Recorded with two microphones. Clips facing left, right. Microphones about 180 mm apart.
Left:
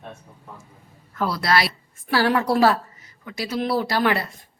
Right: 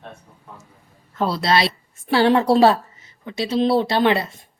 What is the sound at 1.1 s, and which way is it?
A woman's voice, 25° right (ahead or behind).